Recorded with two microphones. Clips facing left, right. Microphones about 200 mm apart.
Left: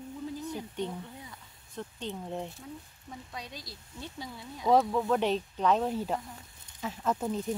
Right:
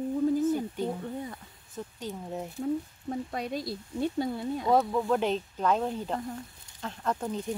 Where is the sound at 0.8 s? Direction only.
50° right (ahead or behind).